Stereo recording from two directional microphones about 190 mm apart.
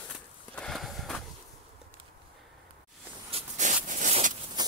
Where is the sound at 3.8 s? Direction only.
40° right (ahead or behind).